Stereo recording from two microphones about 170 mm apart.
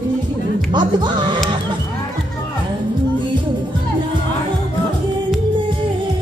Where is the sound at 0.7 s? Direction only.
25° right (ahead or behind).